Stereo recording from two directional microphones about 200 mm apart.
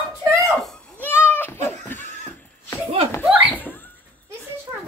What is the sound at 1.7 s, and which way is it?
Laughter, 10° left (ahead or behind).